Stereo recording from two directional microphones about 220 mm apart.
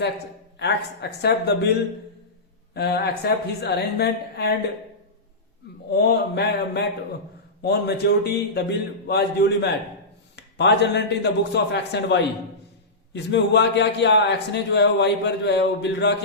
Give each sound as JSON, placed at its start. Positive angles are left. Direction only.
{"t": 1.2, "sound": "a man's voice", "side_deg": 50}
{"t": 5.9, "sound": "a man's voice", "side_deg": 45}